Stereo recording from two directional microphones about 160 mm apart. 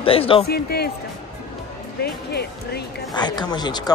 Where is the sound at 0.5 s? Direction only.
85° left.